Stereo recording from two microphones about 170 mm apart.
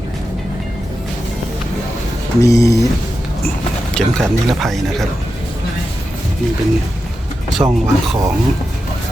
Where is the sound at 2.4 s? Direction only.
20° left (ahead or behind).